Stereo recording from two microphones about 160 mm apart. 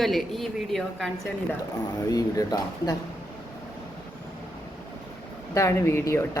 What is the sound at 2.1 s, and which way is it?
Speech, 25° left (ahead or behind).